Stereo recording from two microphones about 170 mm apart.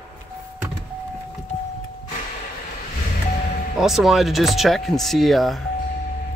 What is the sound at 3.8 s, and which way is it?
Speech, centre (ahead or behind).